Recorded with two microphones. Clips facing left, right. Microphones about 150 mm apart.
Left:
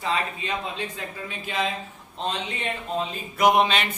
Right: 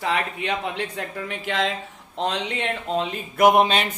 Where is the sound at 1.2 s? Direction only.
85° right.